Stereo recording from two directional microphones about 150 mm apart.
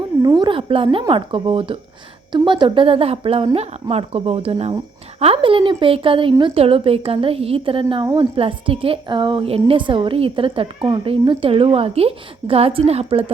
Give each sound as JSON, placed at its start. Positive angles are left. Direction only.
{"t": 0.2, "sound": "a woman's voice", "side_deg": -30}